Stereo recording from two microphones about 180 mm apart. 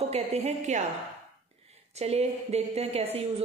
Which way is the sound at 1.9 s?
35° right (ahead or behind).